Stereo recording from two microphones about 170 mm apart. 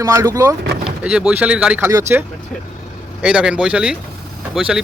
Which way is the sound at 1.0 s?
5° right (ahead or behind).